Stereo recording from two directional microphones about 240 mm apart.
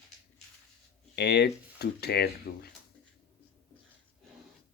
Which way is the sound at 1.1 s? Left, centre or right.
Left.